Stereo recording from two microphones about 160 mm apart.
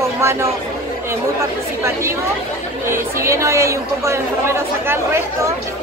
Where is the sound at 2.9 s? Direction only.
15° right (ahead or behind).